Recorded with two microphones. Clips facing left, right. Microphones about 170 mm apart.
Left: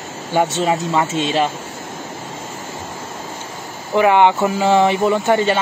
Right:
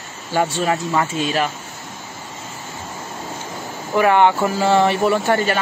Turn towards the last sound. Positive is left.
turn(degrees=20)  # may be behind; listen again after turning